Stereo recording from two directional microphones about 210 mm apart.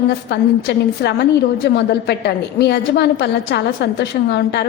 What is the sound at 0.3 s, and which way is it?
A woman's voice, 55° left (ahead or behind).